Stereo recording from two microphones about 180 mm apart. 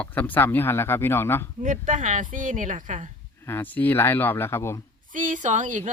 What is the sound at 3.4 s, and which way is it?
Speech, 10° left (ahead or behind).